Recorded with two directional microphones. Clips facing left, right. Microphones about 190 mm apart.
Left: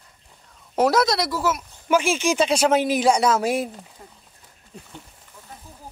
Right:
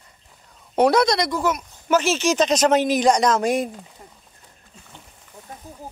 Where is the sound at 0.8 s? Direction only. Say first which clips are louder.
Right 2 dB; 5° left (ahead or behind).